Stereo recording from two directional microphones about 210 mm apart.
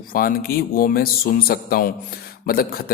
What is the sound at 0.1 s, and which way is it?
Speech, 45° left (ahead or behind).